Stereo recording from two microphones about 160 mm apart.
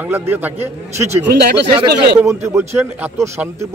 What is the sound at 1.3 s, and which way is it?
Speech, 90° right.